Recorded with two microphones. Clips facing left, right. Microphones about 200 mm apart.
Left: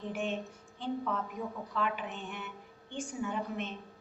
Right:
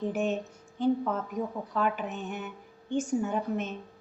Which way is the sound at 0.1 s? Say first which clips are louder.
Right 6 dB; 45° right (ahead or behind).